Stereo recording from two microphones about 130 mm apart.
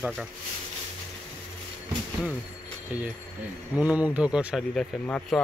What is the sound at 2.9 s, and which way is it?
Speech, 10° right (ahead or behind).